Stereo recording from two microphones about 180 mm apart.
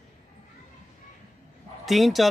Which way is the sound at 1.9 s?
Centre (ahead or behind).